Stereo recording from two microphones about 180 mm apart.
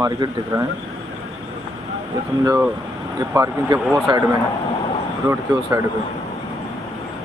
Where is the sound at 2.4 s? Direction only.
15° right (ahead or behind).